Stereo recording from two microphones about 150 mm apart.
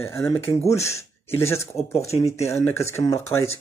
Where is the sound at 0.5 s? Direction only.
45° left (ahead or behind).